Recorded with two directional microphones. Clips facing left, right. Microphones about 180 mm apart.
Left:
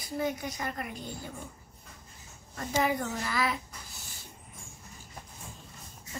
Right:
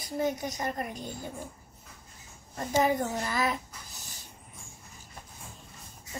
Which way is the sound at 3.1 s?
30° right (ahead or behind).